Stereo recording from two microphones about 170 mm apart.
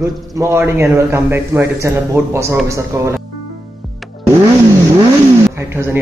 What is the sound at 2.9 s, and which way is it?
Speech, 15° right (ahead or behind).